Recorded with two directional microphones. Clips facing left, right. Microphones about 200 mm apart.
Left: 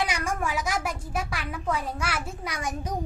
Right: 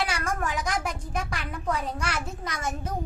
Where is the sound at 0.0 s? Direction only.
15° left (ahead or behind).